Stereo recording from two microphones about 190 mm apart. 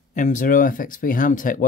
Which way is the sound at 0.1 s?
40° left (ahead or behind).